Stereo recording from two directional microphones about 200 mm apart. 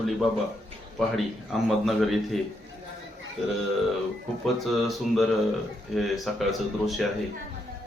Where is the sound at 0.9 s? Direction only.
Centre (ahead or behind).